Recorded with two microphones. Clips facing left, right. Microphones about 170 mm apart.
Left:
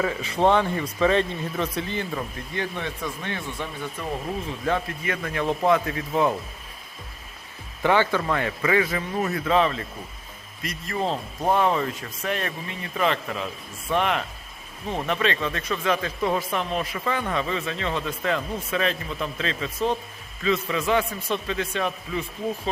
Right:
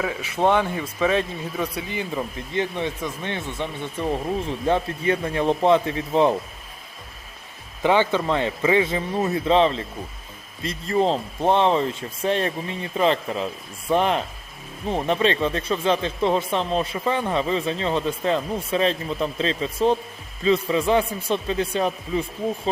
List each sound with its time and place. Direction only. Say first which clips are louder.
0.0 s a man's voice: even; 5° right (ahead or behind); by 6.3 s 30° right (ahead or behind)
7.8 s speech: right 2 dB; 15° right (ahead or behind); by 22.2 s 35° right (ahead or behind)